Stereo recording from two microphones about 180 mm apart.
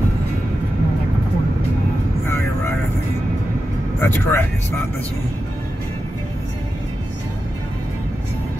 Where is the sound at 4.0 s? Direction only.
10° left (ahead or behind).